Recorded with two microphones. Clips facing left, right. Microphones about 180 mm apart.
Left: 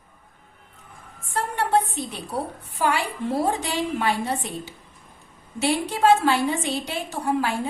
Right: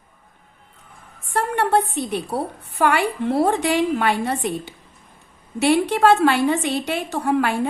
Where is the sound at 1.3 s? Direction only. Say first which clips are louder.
Right 3 dB; 60° right (ahead or behind).